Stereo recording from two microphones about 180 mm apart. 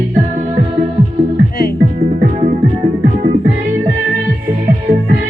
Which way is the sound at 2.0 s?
50° right (ahead or behind).